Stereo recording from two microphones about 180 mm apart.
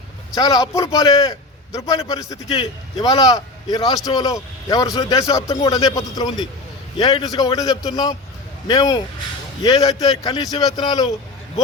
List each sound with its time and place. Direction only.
0.3 s a man's voice: 20° left (ahead or behind)
10.0 s a man's voice: 20° left (ahead or behind)